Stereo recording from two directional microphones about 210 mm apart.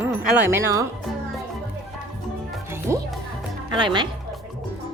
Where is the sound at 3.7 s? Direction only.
20° right (ahead or behind).